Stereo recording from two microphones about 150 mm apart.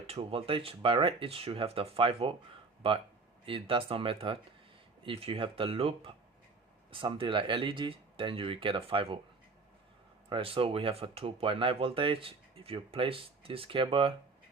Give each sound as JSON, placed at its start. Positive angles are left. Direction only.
{"t": 0.1, "sound": "speech", "side_deg": -40}
{"t": 3.4, "sound": "speech", "side_deg": -35}
{"t": 10.2, "sound": "speech", "side_deg": -35}